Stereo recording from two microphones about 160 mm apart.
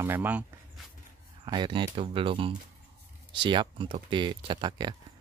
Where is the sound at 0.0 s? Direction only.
10° right (ahead or behind).